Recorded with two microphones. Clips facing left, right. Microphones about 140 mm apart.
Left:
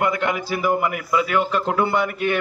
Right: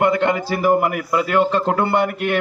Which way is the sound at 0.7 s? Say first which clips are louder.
Right 5 dB; 50° right (ahead or behind).